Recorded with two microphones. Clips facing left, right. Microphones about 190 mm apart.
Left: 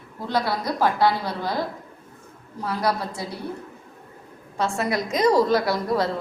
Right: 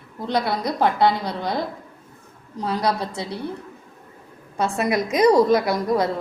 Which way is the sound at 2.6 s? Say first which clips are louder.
Right 2 dB; 20° right (ahead or behind).